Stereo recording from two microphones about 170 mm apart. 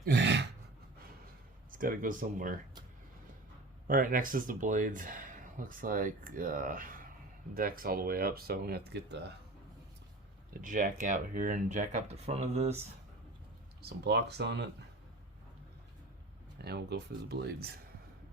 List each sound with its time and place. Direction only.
0.0 s gasp: 85° right
1.7 s speech: 55° right (ahead or behind)
3.8 s speech: 55° right (ahead or behind); by 9.3 s 80° right
10.6 s speech: 50° right (ahead or behind)
13.8 s speech: 80° right
16.6 s speech: 75° right (ahead or behind)